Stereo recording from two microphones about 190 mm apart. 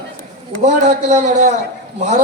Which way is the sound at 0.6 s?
40° right (ahead or behind).